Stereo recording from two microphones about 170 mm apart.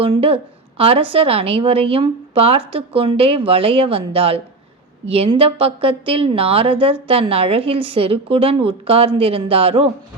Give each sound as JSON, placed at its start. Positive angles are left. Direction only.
{"t": 0.0, "sound": "a woman's voice", "side_deg": -30}